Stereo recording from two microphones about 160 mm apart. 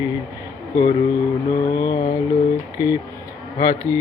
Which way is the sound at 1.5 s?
25° left (ahead or behind).